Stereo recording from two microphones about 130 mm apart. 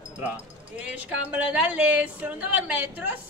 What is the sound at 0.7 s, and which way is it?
Music, 10° right (ahead or behind).